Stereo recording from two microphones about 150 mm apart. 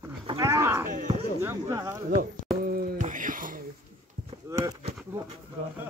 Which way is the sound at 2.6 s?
80° right.